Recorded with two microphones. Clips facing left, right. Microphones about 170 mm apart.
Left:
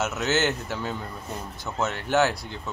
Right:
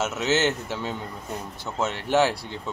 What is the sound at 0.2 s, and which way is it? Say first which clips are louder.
Speech: right 2 dB; 25° right (ahead or behind).